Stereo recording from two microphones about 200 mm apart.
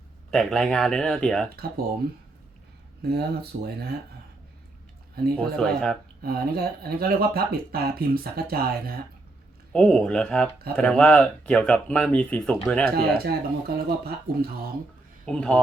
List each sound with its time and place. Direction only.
0.3 s speech: centre (ahead or behind)
3.0 s speech: 55° right (ahead or behind)
5.1 s speech: 50° right (ahead or behind)
5.5 s speech: 5° left (ahead or behind)
6.2 s speech: 50° right (ahead or behind)
9.7 s speech: 5° left (ahead or behind)
13.0 s speech: 50° right (ahead or behind)
15.3 s speech: 5° left (ahead or behind)